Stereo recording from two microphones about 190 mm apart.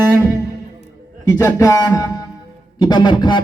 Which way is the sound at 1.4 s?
20° left (ahead or behind).